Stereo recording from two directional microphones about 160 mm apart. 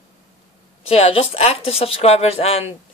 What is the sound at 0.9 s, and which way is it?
Speech, 40° left (ahead or behind).